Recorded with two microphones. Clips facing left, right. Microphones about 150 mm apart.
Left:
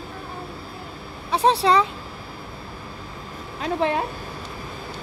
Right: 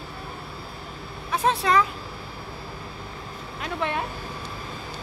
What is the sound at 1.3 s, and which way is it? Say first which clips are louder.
Speech: left 4 dB; 30° left (ahead or behind).